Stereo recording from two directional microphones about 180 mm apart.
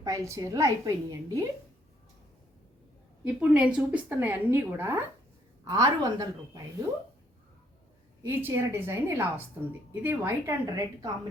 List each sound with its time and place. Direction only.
0.0 s a woman's voice: 20° right (ahead or behind)
3.2 s a woman's voice: 5° right (ahead or behind)
8.2 s a woman's voice: 10° right (ahead or behind)